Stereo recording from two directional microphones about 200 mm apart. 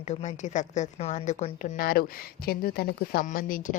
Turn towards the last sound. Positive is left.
turn(degrees=45)  # may be behind; listen again after turning